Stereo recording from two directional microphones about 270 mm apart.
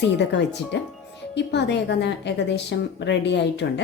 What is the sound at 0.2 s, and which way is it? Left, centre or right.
A woman's voice, left.